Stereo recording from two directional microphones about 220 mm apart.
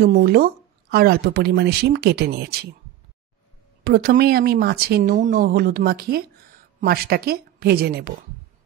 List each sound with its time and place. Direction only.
0.0 s speech: 45° right (ahead or behind)
3.8 s speech: 45° right (ahead or behind)